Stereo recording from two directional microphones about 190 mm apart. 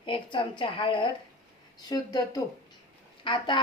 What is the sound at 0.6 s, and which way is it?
A woman's voice, 25° left (ahead or behind).